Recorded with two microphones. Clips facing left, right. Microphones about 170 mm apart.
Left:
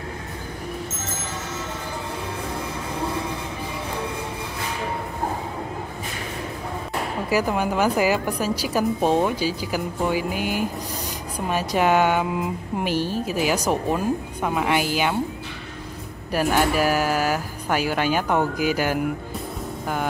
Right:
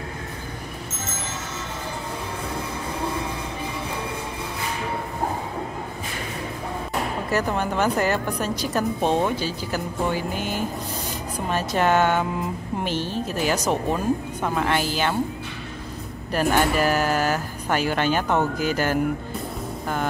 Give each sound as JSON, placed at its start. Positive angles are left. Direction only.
{"t": 7.2, "sound": "speech", "side_deg": 10}
{"t": 16.3, "sound": "speech", "side_deg": 10}